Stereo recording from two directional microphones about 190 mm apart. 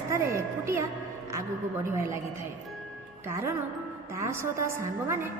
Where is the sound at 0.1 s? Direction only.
15° right (ahead or behind).